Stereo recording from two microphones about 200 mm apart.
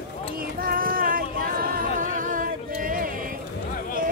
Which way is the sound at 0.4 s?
45° right (ahead or behind).